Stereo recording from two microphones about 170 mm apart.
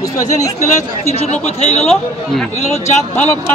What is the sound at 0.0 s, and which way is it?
Speech, 20° left (ahead or behind).